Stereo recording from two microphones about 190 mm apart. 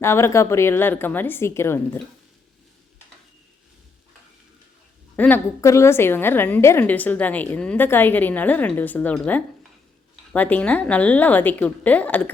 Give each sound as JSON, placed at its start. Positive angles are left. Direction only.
{"t": 0.0, "sound": "a woman's voice", "side_deg": 15}
{"t": 5.1, "sound": "a woman's voice", "side_deg": 10}